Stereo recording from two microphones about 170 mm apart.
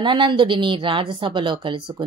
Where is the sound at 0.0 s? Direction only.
30° right (ahead or behind).